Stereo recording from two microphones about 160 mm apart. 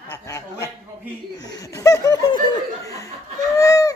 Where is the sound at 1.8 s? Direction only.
20° left (ahead or behind).